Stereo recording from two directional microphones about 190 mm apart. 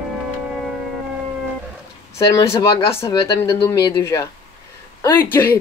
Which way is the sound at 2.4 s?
20° left (ahead or behind).